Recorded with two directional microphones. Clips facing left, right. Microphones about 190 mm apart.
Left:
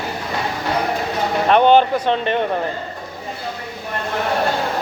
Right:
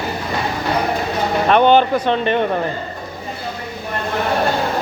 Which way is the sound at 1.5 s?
35° left (ahead or behind).